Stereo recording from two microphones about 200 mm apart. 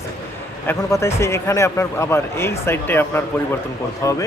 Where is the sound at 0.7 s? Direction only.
15° left (ahead or behind).